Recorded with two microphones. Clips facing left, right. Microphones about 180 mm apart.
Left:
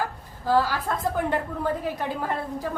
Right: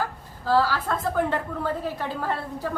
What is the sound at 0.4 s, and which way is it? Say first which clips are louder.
Speech: even; 15° left (ahead or behind).